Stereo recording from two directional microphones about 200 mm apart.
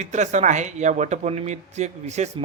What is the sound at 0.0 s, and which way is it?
A man's voice, 35° right (ahead or behind).